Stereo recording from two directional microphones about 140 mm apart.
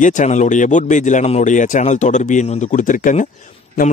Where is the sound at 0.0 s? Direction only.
60° left (ahead or behind).